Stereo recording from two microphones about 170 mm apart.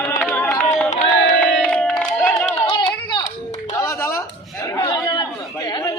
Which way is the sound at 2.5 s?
25° left (ahead or behind).